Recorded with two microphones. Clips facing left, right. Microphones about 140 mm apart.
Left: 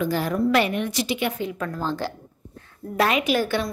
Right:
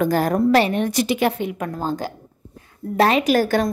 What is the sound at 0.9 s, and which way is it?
Speech, 45° right (ahead or behind).